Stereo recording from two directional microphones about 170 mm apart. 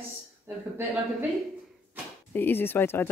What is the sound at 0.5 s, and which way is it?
Speech, 15° right (ahead or behind).